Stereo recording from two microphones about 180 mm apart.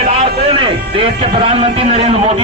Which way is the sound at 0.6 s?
30° right (ahead or behind).